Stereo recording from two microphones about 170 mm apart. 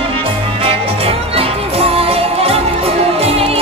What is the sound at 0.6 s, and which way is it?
Music, 35° right (ahead or behind).